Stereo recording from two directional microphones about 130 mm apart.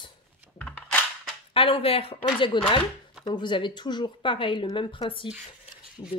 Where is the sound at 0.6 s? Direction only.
10° left (ahead or behind).